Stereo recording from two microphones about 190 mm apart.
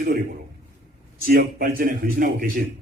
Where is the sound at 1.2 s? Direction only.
50° right (ahead or behind).